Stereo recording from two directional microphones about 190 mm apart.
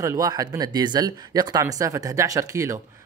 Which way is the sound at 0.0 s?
20° right (ahead or behind).